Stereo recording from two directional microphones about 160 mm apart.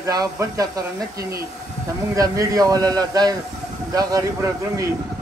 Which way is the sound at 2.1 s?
20° right (ahead or behind).